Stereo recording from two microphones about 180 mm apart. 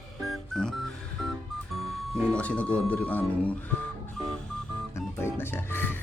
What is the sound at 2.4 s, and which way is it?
Speech, 5° left (ahead or behind).